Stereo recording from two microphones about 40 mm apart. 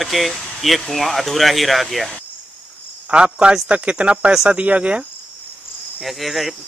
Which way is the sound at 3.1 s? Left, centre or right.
Right.